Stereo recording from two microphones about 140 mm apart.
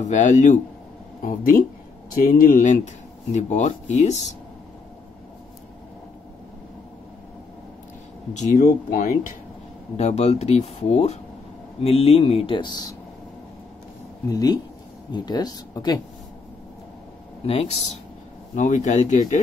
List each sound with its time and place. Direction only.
0.0 s speech: 60° left (ahead or behind)
2.2 s speech: 90° left; by 4.3 s 55° left (ahead or behind)
8.3 s speech: 55° left (ahead or behind); by 9.1 s 85° left
9.9 s speech: 50° left (ahead or behind); by 12.9 s 30° left (ahead or behind)
14.3 s speech: 30° left (ahead or behind)
17.5 s speech: 50° left (ahead or behind)